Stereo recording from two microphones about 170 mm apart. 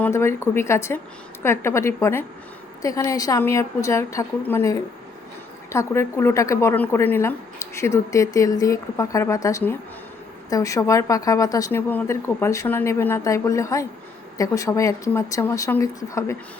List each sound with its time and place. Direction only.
0.0 s speech: 15° left (ahead or behind)